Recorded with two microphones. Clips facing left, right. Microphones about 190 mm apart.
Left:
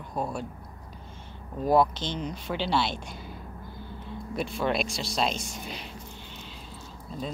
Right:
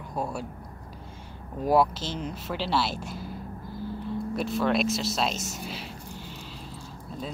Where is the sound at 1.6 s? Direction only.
5° right (ahead or behind).